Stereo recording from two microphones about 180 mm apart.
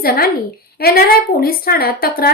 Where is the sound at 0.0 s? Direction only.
55° left (ahead or behind).